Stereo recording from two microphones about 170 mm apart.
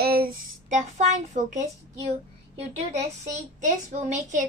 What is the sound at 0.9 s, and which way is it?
A child's voice, 45° right (ahead or behind).